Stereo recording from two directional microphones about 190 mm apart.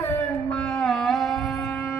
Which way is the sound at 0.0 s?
10° left (ahead or behind).